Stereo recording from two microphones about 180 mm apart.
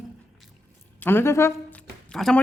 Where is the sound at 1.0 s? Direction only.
15° left (ahead or behind).